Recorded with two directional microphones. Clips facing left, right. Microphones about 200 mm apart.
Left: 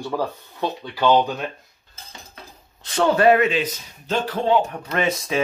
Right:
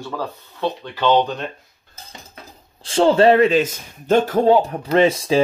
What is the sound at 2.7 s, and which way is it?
Speech, 30° right (ahead or behind).